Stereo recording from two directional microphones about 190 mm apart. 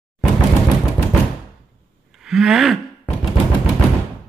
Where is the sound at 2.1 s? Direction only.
5° right (ahead or behind).